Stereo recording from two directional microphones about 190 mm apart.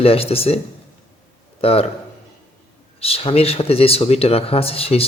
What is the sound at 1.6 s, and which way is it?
Speech, 30° left (ahead or behind).